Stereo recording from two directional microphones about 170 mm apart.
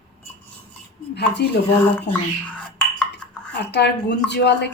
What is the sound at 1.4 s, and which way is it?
Speech, 85° left.